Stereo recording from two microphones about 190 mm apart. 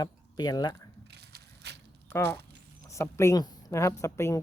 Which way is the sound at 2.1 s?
15° left (ahead or behind).